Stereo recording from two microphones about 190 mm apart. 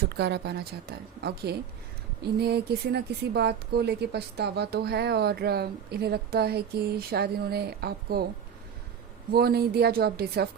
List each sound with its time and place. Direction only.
0.2 s speech: 60° right (ahead or behind)
9.3 s speech: 55° right (ahead or behind)